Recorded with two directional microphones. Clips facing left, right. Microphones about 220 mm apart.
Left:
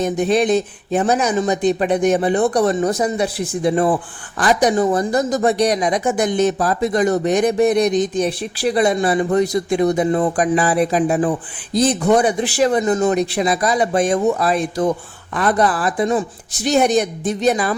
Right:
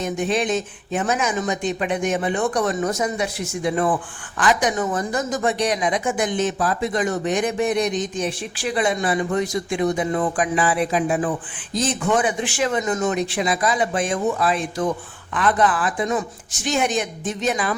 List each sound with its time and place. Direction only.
0.0 s speech: 35° left (ahead or behind)